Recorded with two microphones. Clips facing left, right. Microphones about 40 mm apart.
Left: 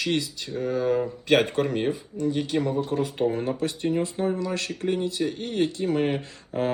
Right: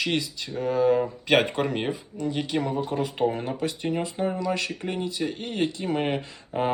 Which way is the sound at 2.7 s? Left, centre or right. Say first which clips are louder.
Left 1 dB; right.